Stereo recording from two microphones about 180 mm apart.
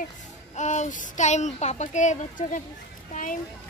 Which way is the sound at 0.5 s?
40° left (ahead or behind).